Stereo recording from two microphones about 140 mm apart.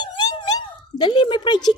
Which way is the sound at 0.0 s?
30° left (ahead or behind).